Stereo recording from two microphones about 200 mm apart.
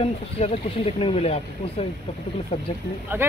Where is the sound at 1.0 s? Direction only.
30° left (ahead or behind).